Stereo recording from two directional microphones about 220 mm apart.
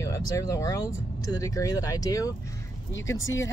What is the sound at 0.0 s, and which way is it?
Speech, 15° left (ahead or behind).